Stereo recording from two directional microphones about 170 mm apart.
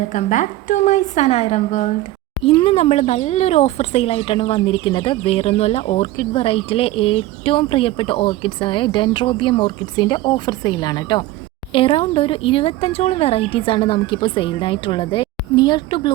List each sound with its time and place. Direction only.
0.1 s a woman's voice: 45° left (ahead or behind); by 16.1 s 25° left (ahead or behind)